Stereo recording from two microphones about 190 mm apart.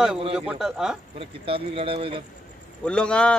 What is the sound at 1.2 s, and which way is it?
Speech, 30° right (ahead or behind).